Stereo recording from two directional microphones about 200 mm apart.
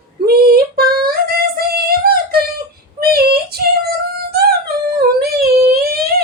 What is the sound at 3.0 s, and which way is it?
Child singing, 50° right (ahead or behind).